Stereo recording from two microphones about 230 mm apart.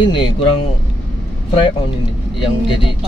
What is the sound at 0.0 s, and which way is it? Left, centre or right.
Speech, left.